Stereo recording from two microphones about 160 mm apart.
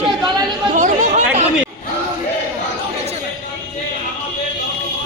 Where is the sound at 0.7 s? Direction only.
50° right (ahead or behind).